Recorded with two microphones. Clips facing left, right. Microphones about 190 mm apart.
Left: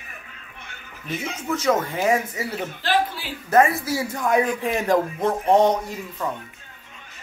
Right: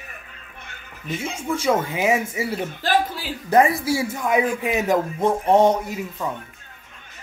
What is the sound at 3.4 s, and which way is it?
Speech, 15° right (ahead or behind).